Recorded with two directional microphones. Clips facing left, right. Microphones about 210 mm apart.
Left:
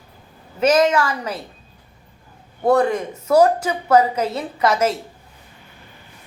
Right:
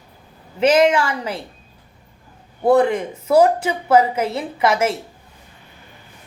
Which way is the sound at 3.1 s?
10° right (ahead or behind).